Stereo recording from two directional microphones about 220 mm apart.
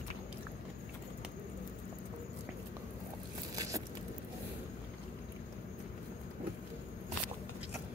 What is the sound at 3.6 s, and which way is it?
Scrape, 15° right (ahead or behind).